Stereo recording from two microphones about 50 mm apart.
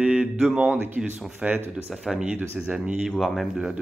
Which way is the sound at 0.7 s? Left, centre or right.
Right.